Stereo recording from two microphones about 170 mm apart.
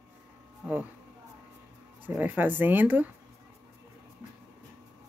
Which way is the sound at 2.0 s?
10° right (ahead or behind).